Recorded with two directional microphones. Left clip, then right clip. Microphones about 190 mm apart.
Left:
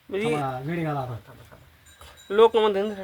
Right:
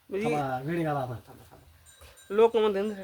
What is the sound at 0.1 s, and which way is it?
Speech, 5° left (ahead or behind).